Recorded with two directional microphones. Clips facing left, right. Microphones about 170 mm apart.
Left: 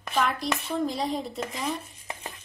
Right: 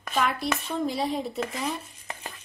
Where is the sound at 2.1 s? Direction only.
15° left (ahead or behind).